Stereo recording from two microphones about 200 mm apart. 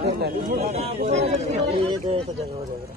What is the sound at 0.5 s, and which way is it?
Speech, 30° right (ahead or behind).